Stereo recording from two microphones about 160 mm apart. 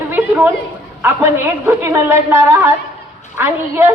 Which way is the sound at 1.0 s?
15° right (ahead or behind).